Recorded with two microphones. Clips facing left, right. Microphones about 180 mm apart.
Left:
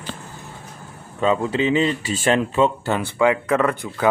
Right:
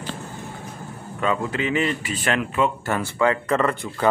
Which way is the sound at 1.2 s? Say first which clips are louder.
Left 4 dB; 25° left (ahead or behind).